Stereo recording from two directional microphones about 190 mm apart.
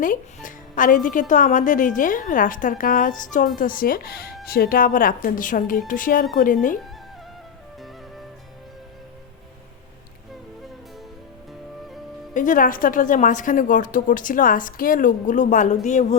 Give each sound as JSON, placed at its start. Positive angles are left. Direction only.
{"t": 0.4, "sound": "a woman's voice", "side_deg": 45}
{"t": 12.3, "sound": "a woman's voice", "side_deg": 45}